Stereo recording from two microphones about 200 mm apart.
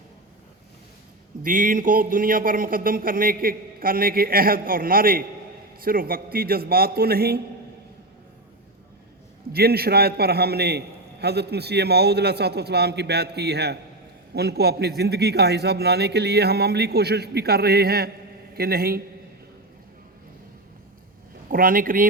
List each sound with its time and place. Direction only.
1.5 s a man's voice: 40° right (ahead or behind)
9.5 s a man's voice: 50° right (ahead or behind)
21.5 s a man's voice: 45° right (ahead or behind)